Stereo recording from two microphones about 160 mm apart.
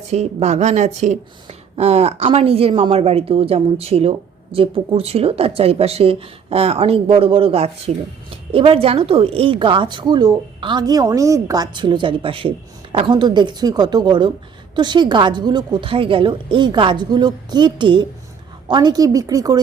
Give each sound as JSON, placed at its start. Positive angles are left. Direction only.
{"t": 0.1, "sound": "a woman's voice", "side_deg": -40}